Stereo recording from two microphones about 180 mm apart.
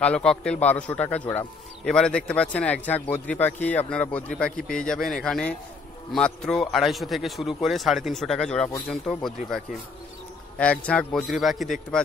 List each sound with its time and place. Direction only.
0.0 s a man's voice: 5° left (ahead or behind)
4.6 s a man's voice: 50° left (ahead or behind)
4.8 s a man's voice: 5° left (ahead or behind)
10.6 s a man's voice: 5° left (ahead or behind)